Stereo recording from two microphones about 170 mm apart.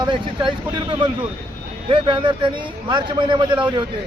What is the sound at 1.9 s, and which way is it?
A man's voice, 30° right (ahead or behind).